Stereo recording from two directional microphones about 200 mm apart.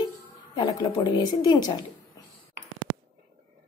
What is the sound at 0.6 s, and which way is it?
Speech, 20° left (ahead or behind).